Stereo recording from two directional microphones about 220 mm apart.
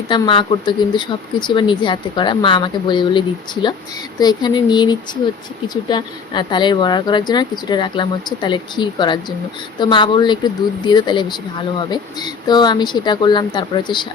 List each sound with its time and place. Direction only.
0.1 s speech: 20° left (ahead or behind)